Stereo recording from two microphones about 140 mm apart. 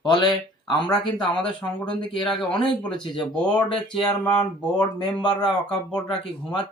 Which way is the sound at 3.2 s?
5° left (ahead or behind).